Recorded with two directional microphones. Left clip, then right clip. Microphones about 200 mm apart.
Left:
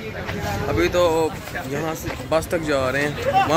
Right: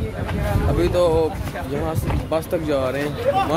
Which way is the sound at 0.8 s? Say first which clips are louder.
Even; 5° right (ahead or behind).